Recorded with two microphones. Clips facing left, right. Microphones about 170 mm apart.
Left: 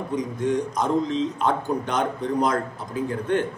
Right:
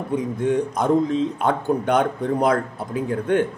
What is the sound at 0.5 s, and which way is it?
A man's voice, 55° right (ahead or behind).